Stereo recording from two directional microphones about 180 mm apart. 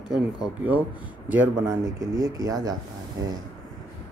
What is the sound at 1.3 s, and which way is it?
Speech, 15° right (ahead or behind).